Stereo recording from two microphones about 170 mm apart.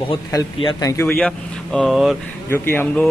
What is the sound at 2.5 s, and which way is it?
Speech, 10° left (ahead or behind).